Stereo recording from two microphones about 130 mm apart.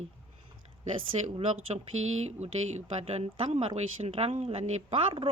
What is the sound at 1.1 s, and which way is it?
Speech, 55° right (ahead or behind).